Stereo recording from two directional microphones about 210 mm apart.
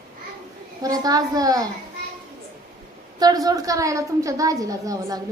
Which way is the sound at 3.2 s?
20° right (ahead or behind).